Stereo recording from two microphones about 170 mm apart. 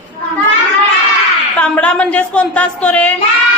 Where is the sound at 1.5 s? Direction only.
10° left (ahead or behind).